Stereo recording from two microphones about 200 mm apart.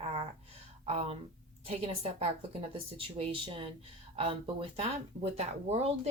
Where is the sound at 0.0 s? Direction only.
30° right (ahead or behind).